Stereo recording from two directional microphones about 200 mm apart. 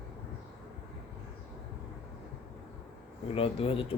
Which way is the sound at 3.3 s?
30° left (ahead or behind).